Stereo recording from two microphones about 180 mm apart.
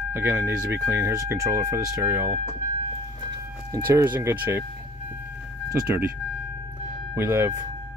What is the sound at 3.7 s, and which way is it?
Speech, 10° right (ahead or behind).